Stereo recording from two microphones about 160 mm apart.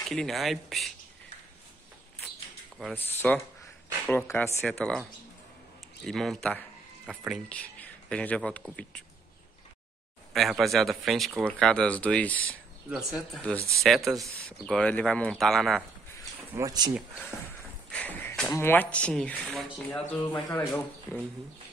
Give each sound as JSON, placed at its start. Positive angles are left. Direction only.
{"t": 0.1, "sound": "speech", "side_deg": 0}
{"t": 3.2, "sound": "speech", "side_deg": 5}
{"t": 6.0, "sound": "speech", "side_deg": 0}
{"t": 10.3, "sound": "speech", "side_deg": 0}
{"t": 12.9, "sound": "speech", "side_deg": 0}
{"t": 13.6, "sound": "speech", "side_deg": -20}
{"t": 13.8, "sound": "speech", "side_deg": 0}
{"t": 16.5, "sound": "speech", "side_deg": -25}
{"t": 17.9, "sound": "a sound", "side_deg": 10}
{"t": 18.5, "sound": "speech", "side_deg": 15}
{"t": 19.9, "sound": "speech", "side_deg": 15}